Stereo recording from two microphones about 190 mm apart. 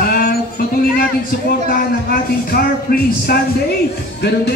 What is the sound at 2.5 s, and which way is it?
Music, 50° left (ahead or behind).